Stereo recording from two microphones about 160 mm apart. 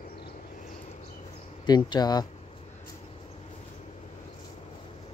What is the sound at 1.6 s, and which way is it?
Speech, 25° left (ahead or behind).